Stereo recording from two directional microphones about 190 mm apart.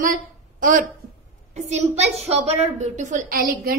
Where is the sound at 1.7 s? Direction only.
35° right (ahead or behind).